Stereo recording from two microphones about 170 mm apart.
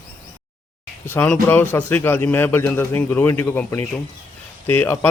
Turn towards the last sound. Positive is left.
turn(degrees=10)  # may be behind; listen again after turning